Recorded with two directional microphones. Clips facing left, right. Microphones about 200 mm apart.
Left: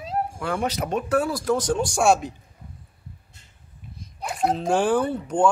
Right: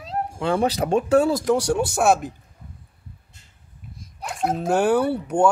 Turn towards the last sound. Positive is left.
turn(degrees=-10)  # may be behind; listen again after turning